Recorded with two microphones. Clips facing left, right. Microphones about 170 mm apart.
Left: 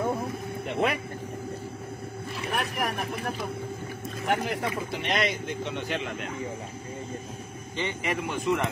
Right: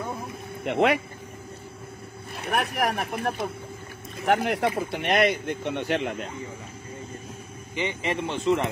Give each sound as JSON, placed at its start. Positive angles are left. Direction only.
{"t": 0.7, "sound": "speech", "side_deg": -85}
{"t": 2.3, "sound": "speech", "side_deg": -60}
{"t": 4.3, "sound": "speech", "side_deg": -70}
{"t": 4.9, "sound": "speech", "side_deg": -55}
{"t": 7.7, "sound": "speech", "side_deg": -20}